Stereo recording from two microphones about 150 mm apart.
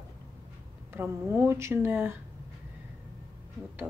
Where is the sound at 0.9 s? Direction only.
15° right (ahead or behind).